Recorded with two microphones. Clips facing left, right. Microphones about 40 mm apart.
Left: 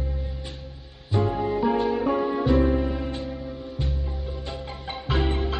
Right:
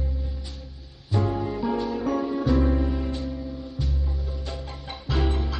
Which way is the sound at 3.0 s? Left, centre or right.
Left.